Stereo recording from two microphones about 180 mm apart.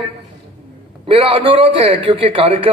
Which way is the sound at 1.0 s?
30° right (ahead or behind).